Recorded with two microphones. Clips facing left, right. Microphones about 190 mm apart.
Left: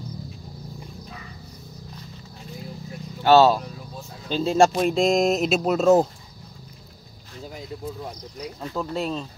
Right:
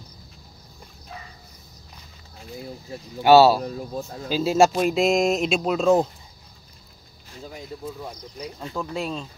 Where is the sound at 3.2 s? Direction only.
10° right (ahead or behind).